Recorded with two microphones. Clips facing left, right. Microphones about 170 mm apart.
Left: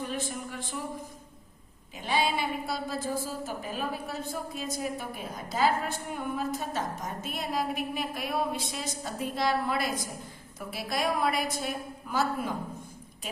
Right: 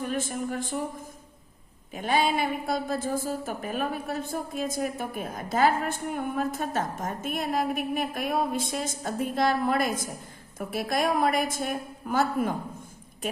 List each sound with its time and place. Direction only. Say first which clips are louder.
0.0 s speech: right 5 dB; 50° right (ahead or behind)
1.9 s a woman's voice: right 4 dB; 50° right (ahead or behind)